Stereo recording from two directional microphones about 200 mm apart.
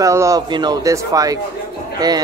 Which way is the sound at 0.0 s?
15° right (ahead or behind).